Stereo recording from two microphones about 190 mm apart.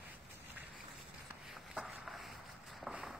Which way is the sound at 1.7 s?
Centre (ahead or behind).